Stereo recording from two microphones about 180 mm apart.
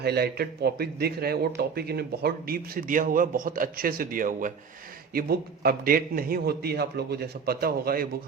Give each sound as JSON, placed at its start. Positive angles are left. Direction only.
{"t": 0.0, "sound": "speech", "side_deg": -60}